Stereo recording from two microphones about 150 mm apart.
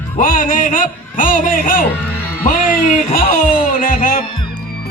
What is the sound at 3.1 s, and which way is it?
Speech, 65° left (ahead or behind).